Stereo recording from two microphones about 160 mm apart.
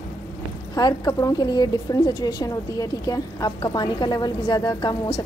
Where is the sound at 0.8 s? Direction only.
25° left (ahead or behind).